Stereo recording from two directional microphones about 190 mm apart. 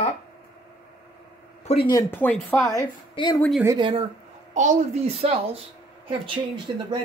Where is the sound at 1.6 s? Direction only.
30° left (ahead or behind).